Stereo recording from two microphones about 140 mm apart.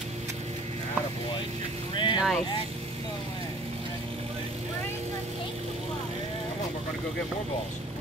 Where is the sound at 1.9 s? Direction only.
35° left (ahead or behind).